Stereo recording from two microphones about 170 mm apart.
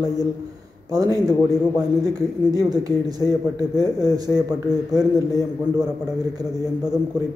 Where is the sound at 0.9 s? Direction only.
20° right (ahead or behind).